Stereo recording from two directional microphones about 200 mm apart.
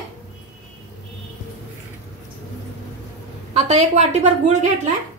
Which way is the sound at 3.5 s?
35° right (ahead or behind).